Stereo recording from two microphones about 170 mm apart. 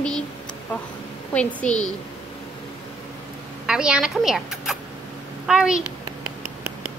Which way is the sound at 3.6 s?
5° right (ahead or behind).